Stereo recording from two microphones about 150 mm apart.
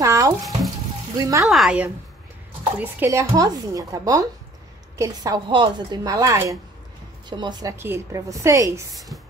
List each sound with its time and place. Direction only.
0.0 s bathtub: 20° right (ahead or behind)
1.1 s speech: 25° right (ahead or behind)
1.4 s a woman's voice: centre (ahead or behind)
2.8 s speech: 15° right (ahead or behind)
7.7 s speech: 15° right (ahead or behind)
8.9 s a woman's voice: centre (ahead or behind)